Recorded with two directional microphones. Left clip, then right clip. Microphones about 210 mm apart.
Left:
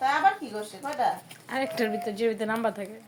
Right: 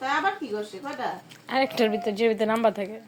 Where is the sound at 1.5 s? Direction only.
20° right (ahead or behind).